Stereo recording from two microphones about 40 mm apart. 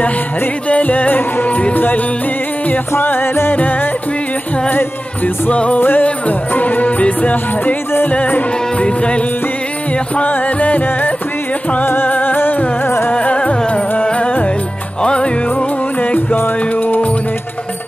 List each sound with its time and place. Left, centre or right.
0.7 s music: left
3.5 s music: left
5.5 s music: left
5.8 s music: left
6.0 s music: left
8.7 s music: left
10.2 s music: left
11.8 s music: left
12.8 s music: left
13.1 s music: left